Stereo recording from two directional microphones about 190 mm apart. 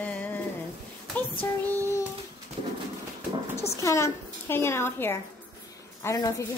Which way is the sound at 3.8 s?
15° left (ahead or behind).